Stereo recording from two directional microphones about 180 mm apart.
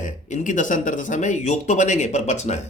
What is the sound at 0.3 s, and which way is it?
Speech, 45° left (ahead or behind).